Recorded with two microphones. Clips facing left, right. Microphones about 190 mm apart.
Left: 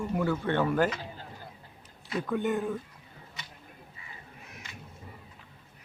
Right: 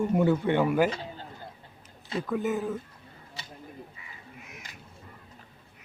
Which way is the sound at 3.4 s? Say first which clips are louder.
Right 3 dB; 30° right (ahead or behind).